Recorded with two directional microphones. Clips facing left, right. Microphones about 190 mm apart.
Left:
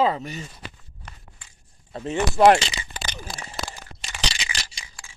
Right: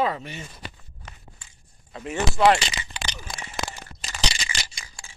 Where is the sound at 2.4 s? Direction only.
45° left (ahead or behind).